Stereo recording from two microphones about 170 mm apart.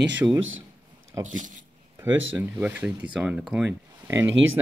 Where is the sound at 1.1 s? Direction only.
20° right (ahead or behind).